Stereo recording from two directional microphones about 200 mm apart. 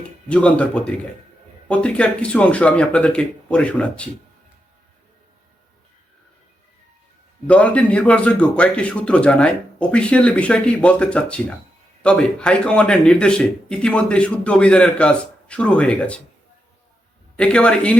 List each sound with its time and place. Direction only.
0.3 s speech: 5° left (ahead or behind)
7.4 s speech: 5° left (ahead or behind)
17.3 s speech: 5° left (ahead or behind)